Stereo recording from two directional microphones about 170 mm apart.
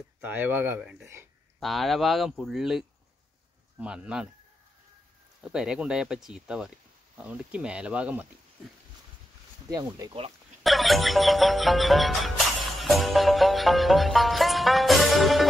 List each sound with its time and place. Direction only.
0.2 s speech: 10° right (ahead or behind)
1.6 s music: centre (ahead or behind)
3.8 s music: 5° right (ahead or behind)
5.4 s music: 5° right (ahead or behind)
7.2 s speech: 5° right (ahead or behind)
9.7 s speech: 20° right (ahead or behind)
10.6 s music: centre (ahead or behind)